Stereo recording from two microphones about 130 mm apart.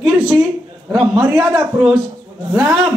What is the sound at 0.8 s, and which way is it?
Speech, 5° right (ahead or behind).